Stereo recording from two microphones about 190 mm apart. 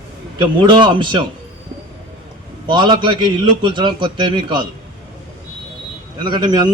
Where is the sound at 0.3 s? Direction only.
25° right (ahead or behind).